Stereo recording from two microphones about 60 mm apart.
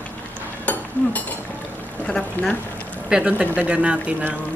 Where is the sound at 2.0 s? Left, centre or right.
Centre.